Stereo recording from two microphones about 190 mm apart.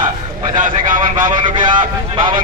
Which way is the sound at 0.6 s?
45° right (ahead or behind).